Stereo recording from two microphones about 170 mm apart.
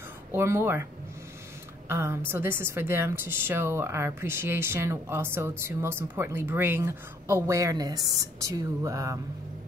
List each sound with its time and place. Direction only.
0.3 s a woman's voice: 15° right (ahead or behind)
1.9 s a woman's voice: 15° right (ahead or behind)